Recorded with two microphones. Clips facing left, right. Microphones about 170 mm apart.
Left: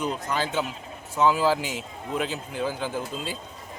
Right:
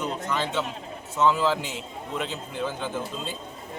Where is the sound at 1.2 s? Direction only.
10° left (ahead or behind).